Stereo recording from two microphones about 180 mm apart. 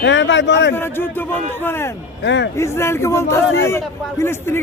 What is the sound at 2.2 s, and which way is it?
Speech, 80° left.